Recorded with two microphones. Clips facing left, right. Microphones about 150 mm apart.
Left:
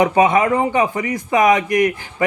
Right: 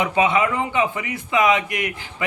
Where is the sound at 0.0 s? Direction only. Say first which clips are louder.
Left 5 dB; 40° left (ahead or behind).